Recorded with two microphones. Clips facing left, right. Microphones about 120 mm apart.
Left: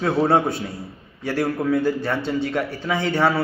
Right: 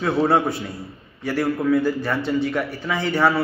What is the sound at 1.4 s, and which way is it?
Speech, 40° left (ahead or behind).